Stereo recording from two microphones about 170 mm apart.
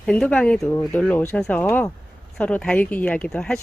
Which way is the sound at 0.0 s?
5° left (ahead or behind).